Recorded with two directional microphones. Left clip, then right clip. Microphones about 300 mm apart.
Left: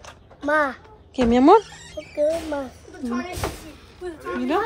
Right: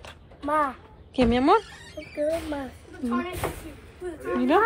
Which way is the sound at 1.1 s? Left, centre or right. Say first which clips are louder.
Left 6 dB; centre.